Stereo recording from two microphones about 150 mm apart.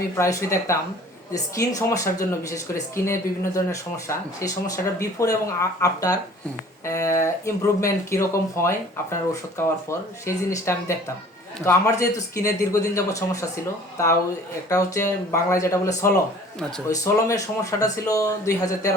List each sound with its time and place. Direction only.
0.2 s speech: 20° left (ahead or behind)
14.7 s speech: 20° left (ahead or behind)